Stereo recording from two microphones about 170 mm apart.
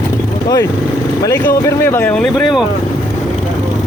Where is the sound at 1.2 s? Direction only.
15° left (ahead or behind).